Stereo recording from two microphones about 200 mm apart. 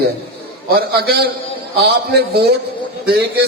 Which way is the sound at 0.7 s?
50° right (ahead or behind).